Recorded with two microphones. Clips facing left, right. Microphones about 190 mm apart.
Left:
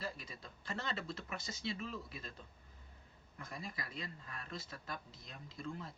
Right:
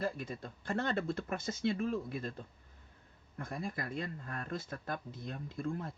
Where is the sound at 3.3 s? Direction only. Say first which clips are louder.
Right 8 dB; 50° right (ahead or behind).